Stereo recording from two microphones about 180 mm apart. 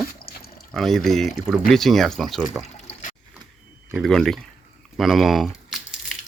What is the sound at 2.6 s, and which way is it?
Water, 40° left (ahead or behind).